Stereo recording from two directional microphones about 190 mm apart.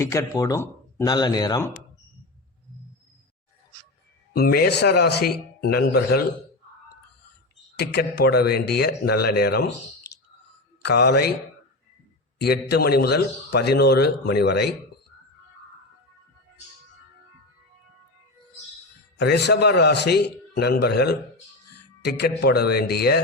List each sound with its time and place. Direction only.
0.0 s speech: 15° left (ahead or behind)
4.4 s a man's voice: 55° left (ahead or behind)
7.8 s a man's voice: 60° left (ahead or behind)
10.8 s a man's voice: 60° left (ahead or behind)
12.4 s a man's voice: 60° left (ahead or behind)
19.2 s a man's voice: 60° left (ahead or behind)